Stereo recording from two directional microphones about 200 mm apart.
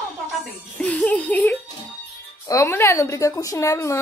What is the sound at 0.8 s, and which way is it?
A woman's voice, 5° left (ahead or behind).